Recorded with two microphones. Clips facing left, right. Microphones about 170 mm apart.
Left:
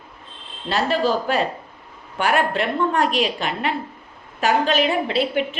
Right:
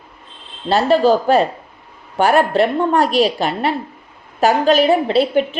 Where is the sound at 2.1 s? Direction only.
35° right (ahead or behind).